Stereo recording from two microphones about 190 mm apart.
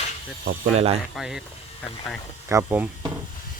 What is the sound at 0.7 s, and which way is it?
Speech, 30° right (ahead or behind).